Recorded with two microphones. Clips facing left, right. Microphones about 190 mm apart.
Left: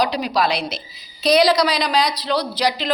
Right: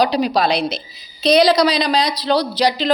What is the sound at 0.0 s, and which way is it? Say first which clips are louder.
A woman's voice: right 3 dB; 30° right (ahead or behind).